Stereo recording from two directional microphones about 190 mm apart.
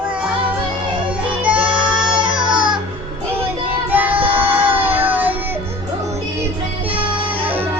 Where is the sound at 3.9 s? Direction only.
10° right (ahead or behind).